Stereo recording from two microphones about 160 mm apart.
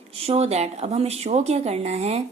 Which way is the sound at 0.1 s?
40° right (ahead or behind).